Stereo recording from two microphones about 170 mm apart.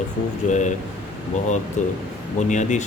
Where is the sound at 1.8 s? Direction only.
45° left (ahead or behind).